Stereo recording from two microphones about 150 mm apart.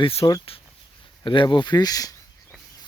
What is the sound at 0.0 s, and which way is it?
Speech, 40° left (ahead or behind).